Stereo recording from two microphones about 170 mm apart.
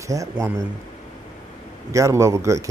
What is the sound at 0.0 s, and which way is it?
Speech, 20° right (ahead or behind).